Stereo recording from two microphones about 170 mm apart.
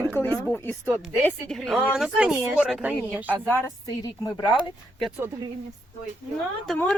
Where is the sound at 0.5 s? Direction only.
10° left (ahead or behind); by 3.3 s 10° right (ahead or behind).